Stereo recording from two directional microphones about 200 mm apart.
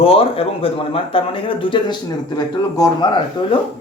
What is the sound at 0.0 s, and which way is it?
Speech, 30° left (ahead or behind).